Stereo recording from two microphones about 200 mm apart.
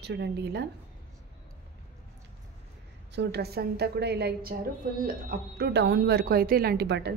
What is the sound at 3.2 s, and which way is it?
Speech, 55° right (ahead or behind).